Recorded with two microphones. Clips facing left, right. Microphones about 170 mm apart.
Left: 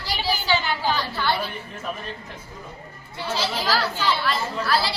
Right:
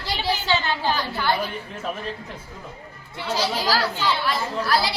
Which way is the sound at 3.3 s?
10° right (ahead or behind).